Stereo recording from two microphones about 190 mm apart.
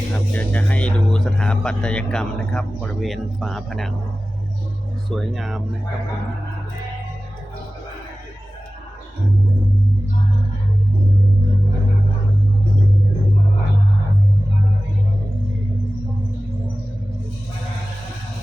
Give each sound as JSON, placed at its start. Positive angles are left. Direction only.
{"t": 0.3, "sound": "speech", "side_deg": 5}
{"t": 5.0, "sound": "speech", "side_deg": 0}